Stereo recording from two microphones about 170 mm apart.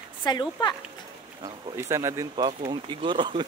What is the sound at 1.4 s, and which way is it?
Speech, 15° right (ahead or behind).